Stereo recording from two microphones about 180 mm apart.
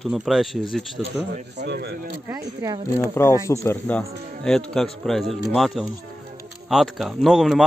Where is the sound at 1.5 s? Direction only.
65° right (ahead or behind).